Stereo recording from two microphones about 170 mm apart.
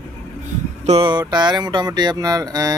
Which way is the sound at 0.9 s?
30° right (ahead or behind).